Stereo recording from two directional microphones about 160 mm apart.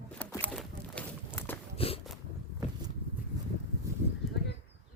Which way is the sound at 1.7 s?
35° left (ahead or behind).